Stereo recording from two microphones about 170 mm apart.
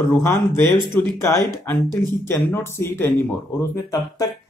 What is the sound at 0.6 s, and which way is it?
Speech, 25° right (ahead or behind).